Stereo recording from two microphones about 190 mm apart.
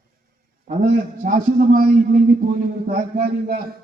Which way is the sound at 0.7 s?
40° right (ahead or behind).